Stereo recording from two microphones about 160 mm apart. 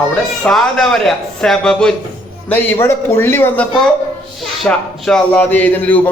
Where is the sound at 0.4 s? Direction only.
5° left (ahead or behind).